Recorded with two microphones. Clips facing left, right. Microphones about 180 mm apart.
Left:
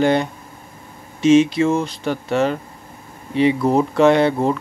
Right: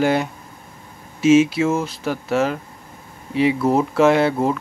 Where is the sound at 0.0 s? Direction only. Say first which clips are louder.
Left 2 dB; 5° right (ahead or behind).